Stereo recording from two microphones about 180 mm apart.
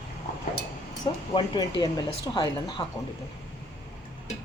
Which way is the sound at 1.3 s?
25° left (ahead or behind).